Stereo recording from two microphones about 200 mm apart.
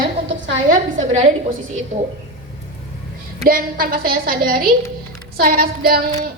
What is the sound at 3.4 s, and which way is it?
A woman's voice, 45° right (ahead or behind).